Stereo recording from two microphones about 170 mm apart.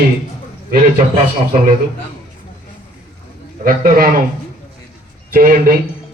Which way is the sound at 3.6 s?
55° right (ahead or behind).